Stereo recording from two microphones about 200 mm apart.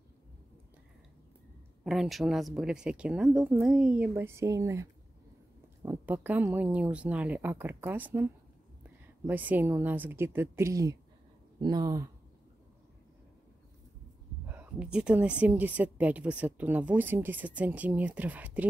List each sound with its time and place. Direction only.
1.9 s a woman's voice: centre (ahead or behind); by 12.1 s 15° right (ahead or behind)
14.5 s a woman's voice: 5° right (ahead or behind)